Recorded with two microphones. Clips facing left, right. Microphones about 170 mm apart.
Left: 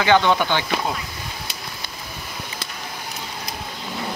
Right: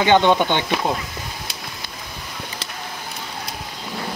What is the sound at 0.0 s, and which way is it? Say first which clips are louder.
Speech: right 2 dB; 20° right (ahead or behind).